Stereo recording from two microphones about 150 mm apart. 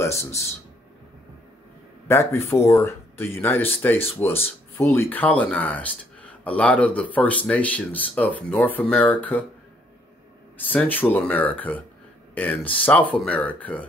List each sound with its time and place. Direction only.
0.0 s a sound: 20° left (ahead or behind)
2.0 s speech: 15° left (ahead or behind)
10.7 s speech: 10° left (ahead or behind)